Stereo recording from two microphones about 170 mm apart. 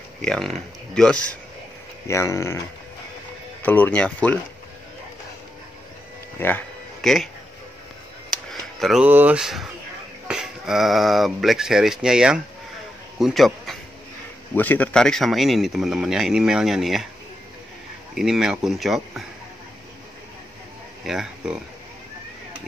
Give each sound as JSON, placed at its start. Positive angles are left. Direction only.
{"t": 0.2, "sound": "speech", "side_deg": 5}
{"t": 2.0, "sound": "speech", "side_deg": 15}
{"t": 3.6, "sound": "speech", "side_deg": 10}
{"t": 6.4, "sound": "a sound", "side_deg": 5}
{"t": 8.3, "sound": "a sound", "side_deg": 0}
{"t": 10.2, "sound": "a man's voice", "side_deg": -5}
{"t": 18.1, "sound": "speech", "side_deg": -5}
{"t": 21.0, "sound": "speech", "side_deg": 0}